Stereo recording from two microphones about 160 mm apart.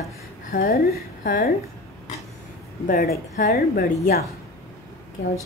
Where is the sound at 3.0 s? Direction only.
80° left.